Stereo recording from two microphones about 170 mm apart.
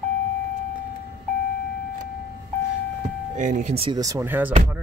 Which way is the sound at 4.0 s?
20° right (ahead or behind).